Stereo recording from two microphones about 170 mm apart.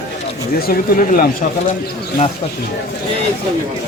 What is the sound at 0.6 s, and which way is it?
Speech, 60° left (ahead or behind).